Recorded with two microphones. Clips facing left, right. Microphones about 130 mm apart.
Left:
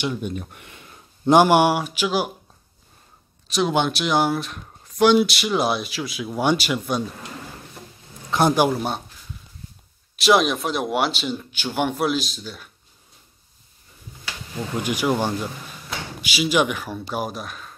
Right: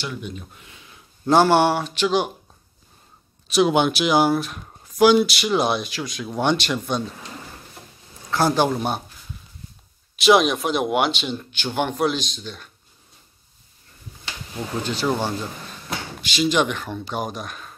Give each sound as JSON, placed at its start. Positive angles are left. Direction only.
{"t": 0.2, "sound": "speech", "side_deg": 60}
{"t": 1.2, "sound": "a man's voice", "side_deg": 15}
{"t": 3.4, "sound": "speech", "side_deg": 0}
{"t": 8.3, "sound": "speech", "side_deg": 20}
{"t": 8.6, "sound": "speech", "side_deg": 0}
{"t": 10.1, "sound": "speech", "side_deg": 0}
{"t": 14.8, "sound": "a man's voice", "side_deg": 10}